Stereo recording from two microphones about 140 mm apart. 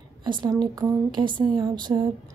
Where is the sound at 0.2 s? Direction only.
35° right (ahead or behind).